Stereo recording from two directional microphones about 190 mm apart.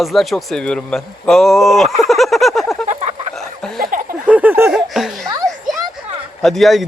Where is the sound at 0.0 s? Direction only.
Centre (ahead or behind).